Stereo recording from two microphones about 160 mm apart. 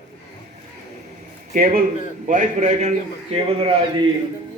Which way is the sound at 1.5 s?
60° right (ahead or behind).